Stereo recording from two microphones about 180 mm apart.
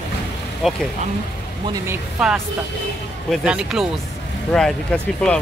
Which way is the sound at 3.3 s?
5° right (ahead or behind).